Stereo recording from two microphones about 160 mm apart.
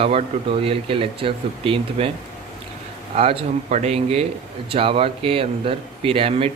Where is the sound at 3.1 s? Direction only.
35° right (ahead or behind).